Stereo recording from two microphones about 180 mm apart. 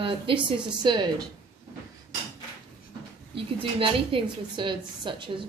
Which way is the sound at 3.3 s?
30° right (ahead or behind).